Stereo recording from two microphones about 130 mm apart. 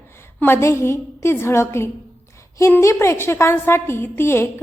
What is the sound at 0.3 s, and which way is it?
A woman's voice, 15° left (ahead or behind).